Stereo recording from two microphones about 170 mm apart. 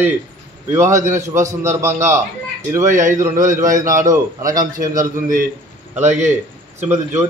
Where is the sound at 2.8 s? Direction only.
50° right (ahead or behind).